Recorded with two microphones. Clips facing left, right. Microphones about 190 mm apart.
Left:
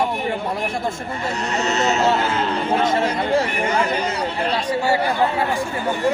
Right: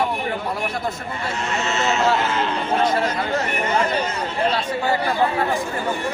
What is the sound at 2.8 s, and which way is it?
Speech, 25° left (ahead or behind).